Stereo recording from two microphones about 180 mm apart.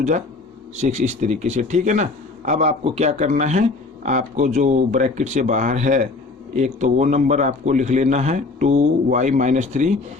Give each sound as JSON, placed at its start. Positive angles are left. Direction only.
{"t": 0.8, "sound": "speech", "side_deg": -40}